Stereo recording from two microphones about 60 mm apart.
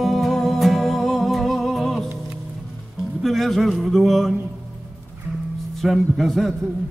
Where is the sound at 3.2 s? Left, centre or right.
Centre.